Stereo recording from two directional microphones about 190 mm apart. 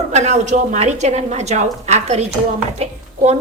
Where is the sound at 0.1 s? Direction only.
35° right (ahead or behind).